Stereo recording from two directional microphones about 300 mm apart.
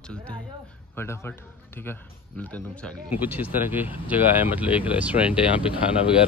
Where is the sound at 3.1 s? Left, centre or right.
Centre.